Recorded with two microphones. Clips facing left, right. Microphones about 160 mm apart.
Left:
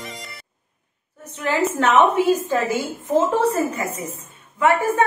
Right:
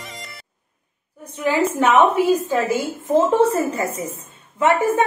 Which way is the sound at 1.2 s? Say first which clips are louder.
Right 2 dB; 10° right (ahead or behind).